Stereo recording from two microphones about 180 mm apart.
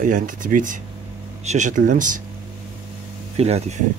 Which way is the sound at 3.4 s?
35° right (ahead or behind).